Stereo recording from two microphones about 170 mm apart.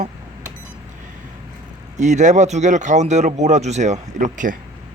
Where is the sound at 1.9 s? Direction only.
45° right (ahead or behind).